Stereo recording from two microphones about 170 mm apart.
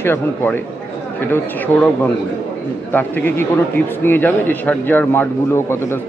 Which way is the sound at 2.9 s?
10° left (ahead or behind).